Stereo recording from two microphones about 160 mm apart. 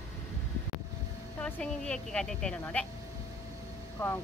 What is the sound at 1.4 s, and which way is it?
A woman's voice, 5° left (ahead or behind).